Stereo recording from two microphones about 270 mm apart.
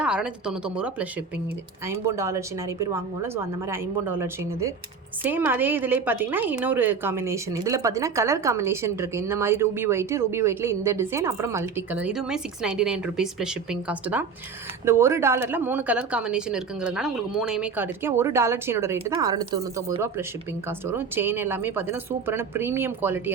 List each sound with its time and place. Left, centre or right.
0.0 s a woman's voice: centre